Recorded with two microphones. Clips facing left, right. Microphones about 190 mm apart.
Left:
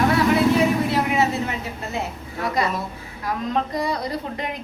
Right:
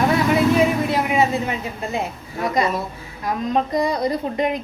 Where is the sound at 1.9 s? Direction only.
15° right (ahead or behind).